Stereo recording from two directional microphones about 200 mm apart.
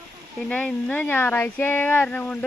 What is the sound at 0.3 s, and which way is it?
Speech, 5° left (ahead or behind).